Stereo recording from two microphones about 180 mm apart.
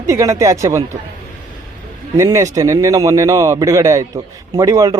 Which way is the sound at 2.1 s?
15° right (ahead or behind).